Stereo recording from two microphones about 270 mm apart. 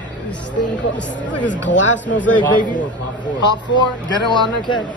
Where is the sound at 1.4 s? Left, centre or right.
Left.